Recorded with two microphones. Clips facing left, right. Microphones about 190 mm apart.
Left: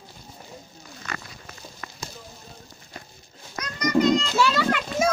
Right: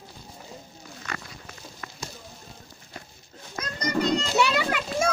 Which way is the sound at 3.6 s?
30° right (ahead or behind).